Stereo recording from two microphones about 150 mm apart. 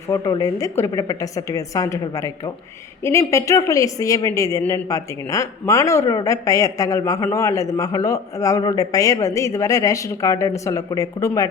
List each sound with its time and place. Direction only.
0.1 s speech: 25° left (ahead or behind)